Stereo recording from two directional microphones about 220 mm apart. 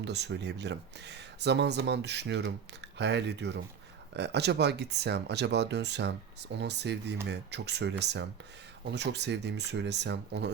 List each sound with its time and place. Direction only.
0.0 s speech: 50° right (ahead or behind)